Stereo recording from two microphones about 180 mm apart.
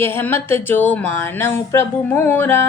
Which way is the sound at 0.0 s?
10° left (ahead or behind).